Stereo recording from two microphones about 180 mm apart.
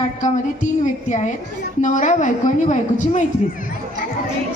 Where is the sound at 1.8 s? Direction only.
45° left (ahead or behind).